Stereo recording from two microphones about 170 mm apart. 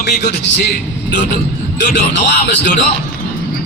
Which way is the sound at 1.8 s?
90° left.